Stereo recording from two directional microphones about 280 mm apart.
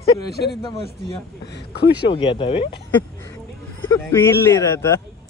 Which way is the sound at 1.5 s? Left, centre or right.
Left.